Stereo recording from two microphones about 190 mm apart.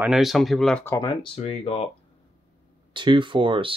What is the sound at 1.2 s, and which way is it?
Speech, 30° left (ahead or behind).